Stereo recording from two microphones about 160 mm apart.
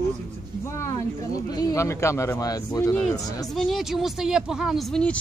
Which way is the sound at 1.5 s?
20° left (ahead or behind).